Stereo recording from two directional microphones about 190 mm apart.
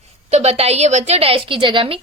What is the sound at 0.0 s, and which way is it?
A woman's voice, 35° right (ahead or behind).